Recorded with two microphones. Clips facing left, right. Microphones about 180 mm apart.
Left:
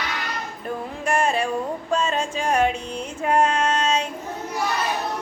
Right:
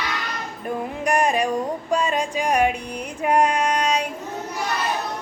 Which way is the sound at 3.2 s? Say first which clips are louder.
Right 1 dB; 15° right (ahead or behind).